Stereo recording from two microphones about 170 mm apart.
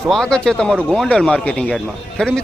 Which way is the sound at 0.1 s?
5° left (ahead or behind).